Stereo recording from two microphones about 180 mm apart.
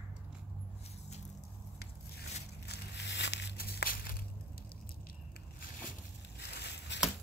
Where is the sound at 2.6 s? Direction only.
70° left (ahead or behind).